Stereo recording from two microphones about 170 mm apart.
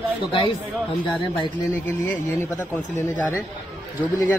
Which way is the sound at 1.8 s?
15° left (ahead or behind).